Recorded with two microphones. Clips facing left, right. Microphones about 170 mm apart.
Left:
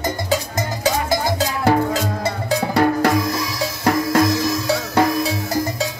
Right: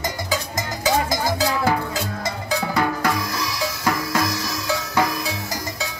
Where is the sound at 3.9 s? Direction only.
25° left (ahead or behind).